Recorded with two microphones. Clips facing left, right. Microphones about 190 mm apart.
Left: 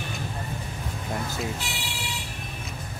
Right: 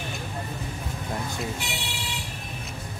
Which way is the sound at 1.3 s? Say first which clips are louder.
Even; centre (ahead or behind).